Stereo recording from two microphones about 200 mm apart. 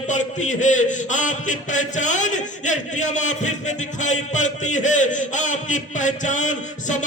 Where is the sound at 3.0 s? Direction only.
40° left (ahead or behind).